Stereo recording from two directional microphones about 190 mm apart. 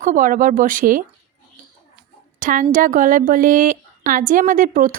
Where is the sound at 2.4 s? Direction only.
45° right (ahead or behind).